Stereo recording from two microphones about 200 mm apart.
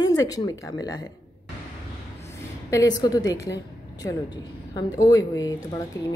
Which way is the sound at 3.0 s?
20° left (ahead or behind).